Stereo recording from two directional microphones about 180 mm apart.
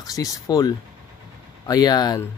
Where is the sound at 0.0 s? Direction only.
20° left (ahead or behind).